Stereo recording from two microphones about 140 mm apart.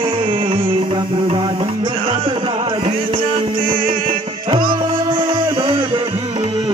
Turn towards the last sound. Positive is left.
turn(degrees=-40)  # may be behind; listen again after turning